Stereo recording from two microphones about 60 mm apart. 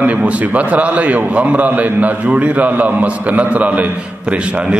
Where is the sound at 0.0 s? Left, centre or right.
Right.